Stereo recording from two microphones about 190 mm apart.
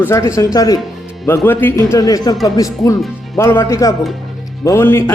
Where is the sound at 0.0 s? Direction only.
15° left (ahead or behind).